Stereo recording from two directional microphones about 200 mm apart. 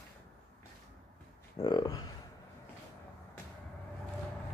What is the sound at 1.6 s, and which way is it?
Speech, 20° left (ahead or behind).